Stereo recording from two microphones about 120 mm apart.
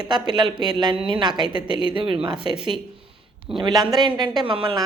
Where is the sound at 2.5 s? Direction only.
5° right (ahead or behind).